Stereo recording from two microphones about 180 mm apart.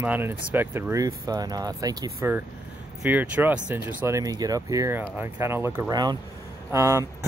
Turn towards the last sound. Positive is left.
turn(degrees=-15)  # may be behind; listen again after turning